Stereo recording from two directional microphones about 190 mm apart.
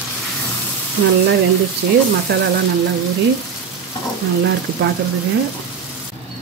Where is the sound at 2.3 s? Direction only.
60° right (ahead or behind).